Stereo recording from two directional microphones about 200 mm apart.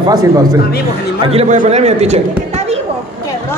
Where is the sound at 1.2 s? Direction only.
30° right (ahead or behind).